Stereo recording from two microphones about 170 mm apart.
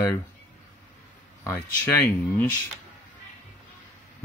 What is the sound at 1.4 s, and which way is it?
Speech, 10° left (ahead or behind).